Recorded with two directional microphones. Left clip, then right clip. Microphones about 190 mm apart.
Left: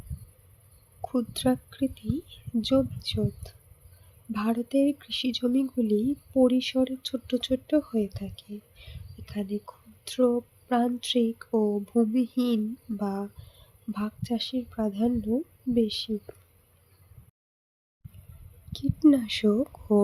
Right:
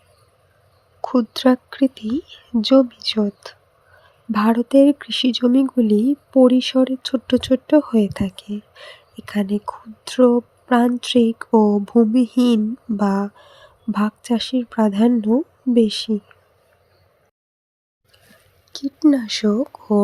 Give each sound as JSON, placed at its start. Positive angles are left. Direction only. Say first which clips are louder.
{"t": 1.0, "sound": "speech", "louder": "right 10 dB", "side_deg": -25}
{"t": 18.7, "sound": "speech", "louder": "right 5 dB", "side_deg": -20}